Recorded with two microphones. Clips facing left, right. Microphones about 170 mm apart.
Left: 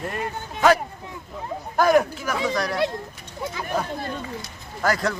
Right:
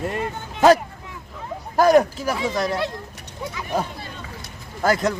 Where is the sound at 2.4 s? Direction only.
25° right (ahead or behind).